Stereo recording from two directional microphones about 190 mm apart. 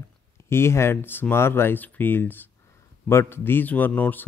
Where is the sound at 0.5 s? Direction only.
15° left (ahead or behind).